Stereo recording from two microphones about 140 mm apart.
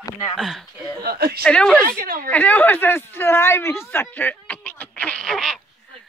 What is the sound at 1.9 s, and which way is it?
Speech, 90° right.